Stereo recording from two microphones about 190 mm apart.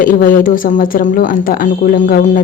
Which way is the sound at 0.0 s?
45° left (ahead or behind).